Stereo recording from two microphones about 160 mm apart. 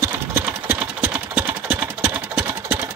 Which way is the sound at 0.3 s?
10° right (ahead or behind).